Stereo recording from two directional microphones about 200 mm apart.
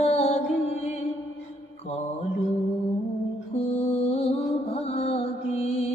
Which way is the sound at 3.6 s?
30° left (ahead or behind).